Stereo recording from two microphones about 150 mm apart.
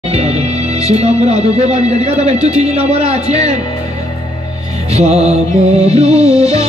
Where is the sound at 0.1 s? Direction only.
45° right (ahead or behind).